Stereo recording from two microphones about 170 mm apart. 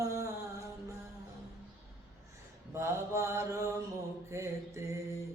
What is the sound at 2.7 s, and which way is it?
Mantra, 15° right (ahead or behind).